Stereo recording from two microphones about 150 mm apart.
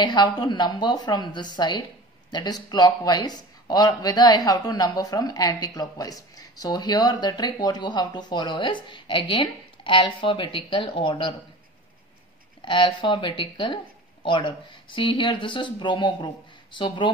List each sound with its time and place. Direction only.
0.0 s speech: 30° left (ahead or behind)
12.6 s speech: 35° left (ahead or behind)